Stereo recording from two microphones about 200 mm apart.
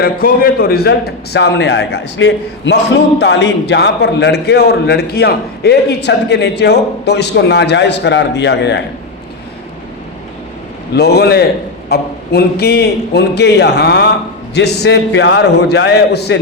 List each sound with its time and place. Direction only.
0.0 s a man's voice: 45° left (ahead or behind)
10.9 s a man's voice: 55° left (ahead or behind)